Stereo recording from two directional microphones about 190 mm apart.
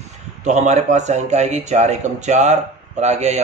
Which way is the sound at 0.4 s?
40° right (ahead or behind).